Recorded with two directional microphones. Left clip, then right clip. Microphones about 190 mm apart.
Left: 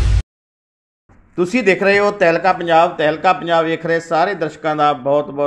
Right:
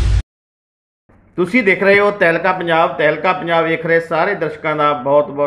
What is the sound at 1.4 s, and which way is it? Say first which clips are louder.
Speech: right 1 dB; 40° left (ahead or behind).